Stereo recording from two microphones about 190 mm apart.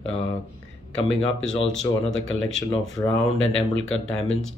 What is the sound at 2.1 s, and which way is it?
Speech, 90° left.